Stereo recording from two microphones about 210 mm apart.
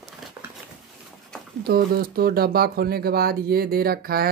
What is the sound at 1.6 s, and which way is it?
Speech, 45° right (ahead or behind).